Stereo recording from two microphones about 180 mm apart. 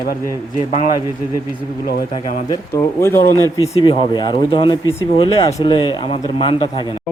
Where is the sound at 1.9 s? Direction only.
50° left (ahead or behind).